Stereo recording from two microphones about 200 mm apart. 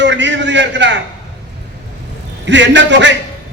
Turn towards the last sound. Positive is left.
turn(degrees=-60)  # may be behind; listen again after turning